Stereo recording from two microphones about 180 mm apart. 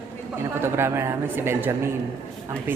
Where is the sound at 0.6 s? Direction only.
15° right (ahead or behind).